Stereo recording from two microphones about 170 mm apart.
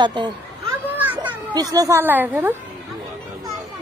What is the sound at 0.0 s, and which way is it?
Speech, 25° right (ahead or behind).